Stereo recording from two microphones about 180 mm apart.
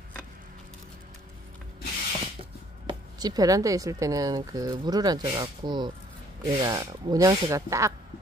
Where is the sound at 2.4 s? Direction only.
25° right (ahead or behind).